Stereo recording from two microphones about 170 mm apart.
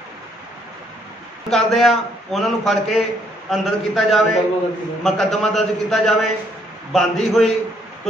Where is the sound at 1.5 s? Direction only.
Centre (ahead or behind).